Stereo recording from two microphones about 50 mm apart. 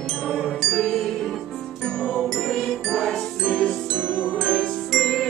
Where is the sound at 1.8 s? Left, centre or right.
Centre.